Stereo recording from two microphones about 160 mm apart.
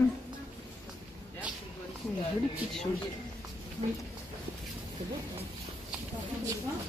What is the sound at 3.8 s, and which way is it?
Speech, 40° right (ahead or behind).